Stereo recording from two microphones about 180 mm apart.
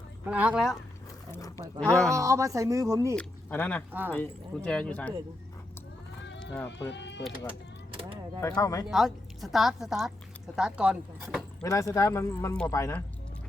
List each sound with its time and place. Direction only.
0.3 s a woman's voice: 5° right (ahead or behind)
1.3 s a sound: 20° left (ahead or behind)
2.0 s speech: 15° right (ahead or behind)
3.2 s speech: 10° left (ahead or behind)
6.4 s sheep: 5° left (ahead or behind)
6.9 s speech: 75° left (ahead or behind)
8.4 s speech: 15° left (ahead or behind)
8.9 s a woman's voice: centre (ahead or behind)
11.6 s speech: 20° left (ahead or behind)